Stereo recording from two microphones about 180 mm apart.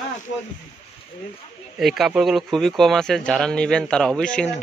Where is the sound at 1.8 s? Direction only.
Centre (ahead or behind).